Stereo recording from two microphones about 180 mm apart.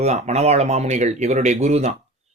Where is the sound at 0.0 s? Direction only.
35° right (ahead or behind).